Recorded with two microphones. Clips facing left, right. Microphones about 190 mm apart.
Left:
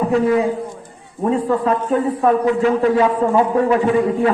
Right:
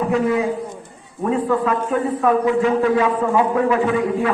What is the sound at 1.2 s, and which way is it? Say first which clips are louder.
A man's voice: left 1 dB; 35° left (ahead or behind).